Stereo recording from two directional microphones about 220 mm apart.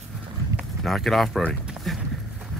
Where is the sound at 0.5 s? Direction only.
Centre (ahead or behind).